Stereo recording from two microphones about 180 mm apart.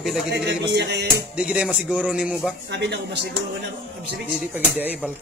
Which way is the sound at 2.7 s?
70° right (ahead or behind).